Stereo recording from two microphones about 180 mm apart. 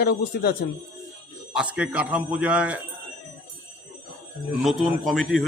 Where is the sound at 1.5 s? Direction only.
5° right (ahead or behind).